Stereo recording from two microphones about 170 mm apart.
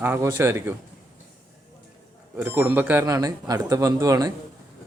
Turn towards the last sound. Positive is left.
turn(degrees=-20)  # may be behind; listen again after turning